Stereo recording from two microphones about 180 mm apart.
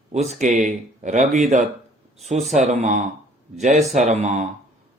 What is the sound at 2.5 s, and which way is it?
A man's voice, 40° right (ahead or behind).